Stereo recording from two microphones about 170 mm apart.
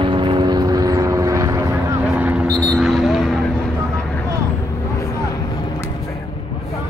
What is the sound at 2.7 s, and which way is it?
Vehicle, centre (ahead or behind).